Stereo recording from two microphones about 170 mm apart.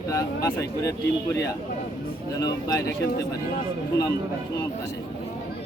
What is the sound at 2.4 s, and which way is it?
Speech, 20° left (ahead or behind).